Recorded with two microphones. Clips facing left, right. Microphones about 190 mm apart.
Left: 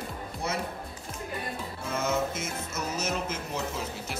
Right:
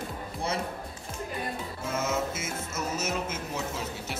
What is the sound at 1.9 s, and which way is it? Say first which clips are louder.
Music: left 1 dB; 5° right (ahead or behind).